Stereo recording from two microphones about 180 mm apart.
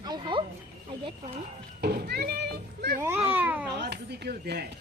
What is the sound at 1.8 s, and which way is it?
A child's voice, 60° right (ahead or behind).